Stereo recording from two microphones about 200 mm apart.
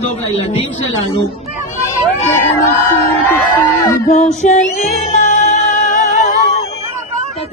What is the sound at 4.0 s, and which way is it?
Music, 35° left (ahead or behind).